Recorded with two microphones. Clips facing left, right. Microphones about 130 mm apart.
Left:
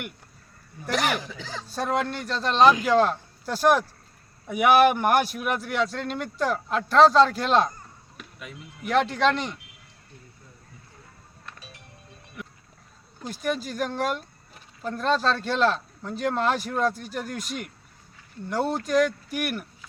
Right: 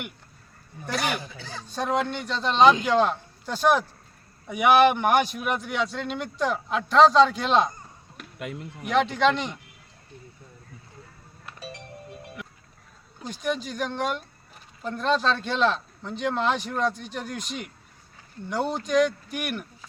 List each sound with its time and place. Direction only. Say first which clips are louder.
0.9 s speech: left 2 dB; 90° left
1.6 s a man's voice: right 1 dB; centre (ahead or behind)
8.4 s speech: right 8 dB; 60° right (ahead or behind)
8.8 s a man's voice: even; centre (ahead or behind)
13.2 s a man's voice: even; 5° left (ahead or behind)